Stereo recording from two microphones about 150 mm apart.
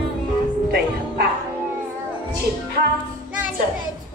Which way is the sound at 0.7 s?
90° right.